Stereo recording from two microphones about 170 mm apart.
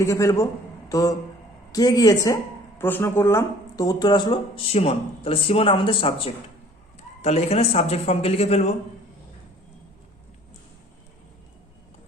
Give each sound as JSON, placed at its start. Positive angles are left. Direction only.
{"t": 0.0, "sound": "a man's voice", "side_deg": 15}